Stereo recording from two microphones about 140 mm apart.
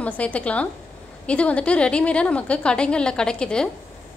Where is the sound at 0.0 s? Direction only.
10° left (ahead or behind).